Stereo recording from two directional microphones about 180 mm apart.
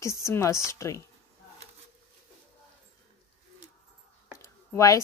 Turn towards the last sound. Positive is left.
turn(degrees=15)  # may be behind; listen again after turning